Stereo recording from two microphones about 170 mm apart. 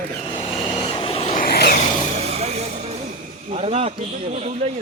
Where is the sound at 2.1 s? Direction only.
40° right (ahead or behind).